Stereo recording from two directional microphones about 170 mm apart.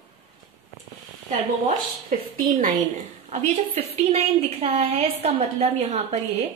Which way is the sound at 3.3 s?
40° right (ahead or behind).